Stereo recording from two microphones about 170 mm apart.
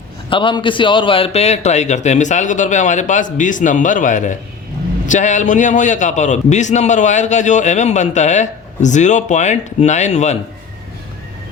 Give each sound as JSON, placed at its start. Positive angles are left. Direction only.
{"t": 0.3, "sound": "a man's voice", "side_deg": 30}